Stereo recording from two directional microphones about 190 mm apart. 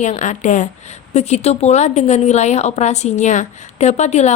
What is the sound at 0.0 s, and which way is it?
A woman's voice, 40° left (ahead or behind).